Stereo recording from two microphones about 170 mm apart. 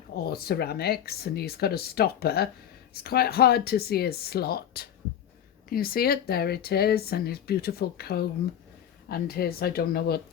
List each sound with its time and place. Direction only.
0.3 s speech: 65° left (ahead or behind)